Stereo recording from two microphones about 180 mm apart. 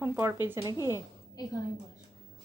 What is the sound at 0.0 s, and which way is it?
Speech, 15° right (ahead or behind).